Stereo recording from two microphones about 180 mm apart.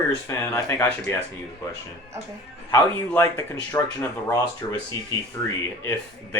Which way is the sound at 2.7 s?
15° left (ahead or behind).